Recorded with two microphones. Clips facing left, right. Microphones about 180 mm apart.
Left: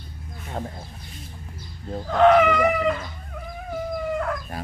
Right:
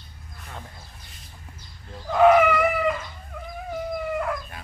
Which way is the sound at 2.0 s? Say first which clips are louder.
Even; 5° right (ahead or behind).